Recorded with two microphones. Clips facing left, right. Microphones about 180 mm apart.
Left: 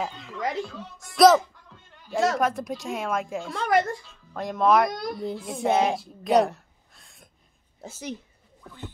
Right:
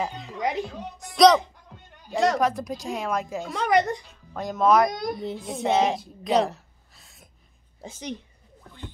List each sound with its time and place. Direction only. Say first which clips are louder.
0.1 s a woman's voice: right 2 dB; 20° right (ahead or behind)
1.1 s a woman's voice: even; 5° left (ahead or behind)
1.4 s music: right 2 dB; 15° right (ahead or behind)
2.1 s a woman's voice: right 1 dB; centre (ahead or behind)
3.8 s speech: right 2 dB; 15° right (ahead or behind)
4.3 s a woman's voice: right 1 dB; centre (ahead or behind)